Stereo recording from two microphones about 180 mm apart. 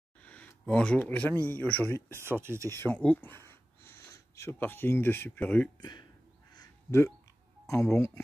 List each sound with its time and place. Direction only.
0.2 s a sound: 5° left (ahead or behind)
1.4 s a man's voice: 10° left (ahead or behind)
2.0 s speech: 15° right (ahead or behind)
2.7 s speech: 10° left (ahead or behind)
5.8 s speech: 25° left (ahead or behind)
6.5 s a sound: 20° left (ahead or behind)
7.6 s a man's voice: 15° left (ahead or behind)